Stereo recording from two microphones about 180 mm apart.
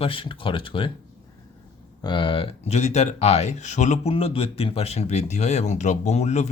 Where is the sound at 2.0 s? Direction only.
25° left (ahead or behind).